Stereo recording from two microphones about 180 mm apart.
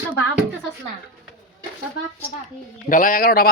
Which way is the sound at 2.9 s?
45° left (ahead or behind).